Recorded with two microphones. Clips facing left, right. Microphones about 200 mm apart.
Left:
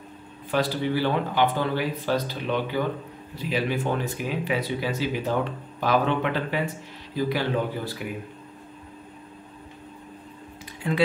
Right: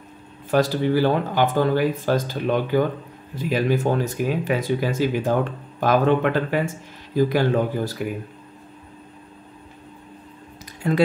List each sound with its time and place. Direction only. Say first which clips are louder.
0.5 s speech: right 5 dB; 45° right (ahead or behind)
10.8 s speech: right 5 dB; 45° right (ahead or behind)